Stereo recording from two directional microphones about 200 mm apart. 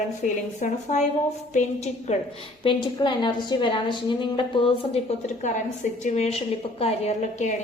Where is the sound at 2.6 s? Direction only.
25° left (ahead or behind).